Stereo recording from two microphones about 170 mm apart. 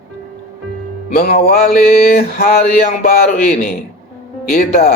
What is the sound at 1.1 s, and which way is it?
A man's voice, 60° left (ahead or behind).